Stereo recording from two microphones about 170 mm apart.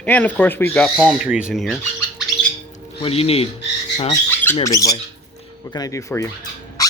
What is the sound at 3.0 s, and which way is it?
Speech, 35° left (ahead or behind).